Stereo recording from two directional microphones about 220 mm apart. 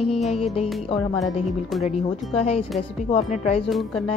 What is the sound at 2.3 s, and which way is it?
Music, 25° left (ahead or behind).